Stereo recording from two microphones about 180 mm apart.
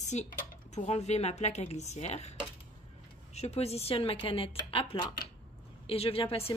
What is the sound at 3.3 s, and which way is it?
A woman's voice, 35° left (ahead or behind).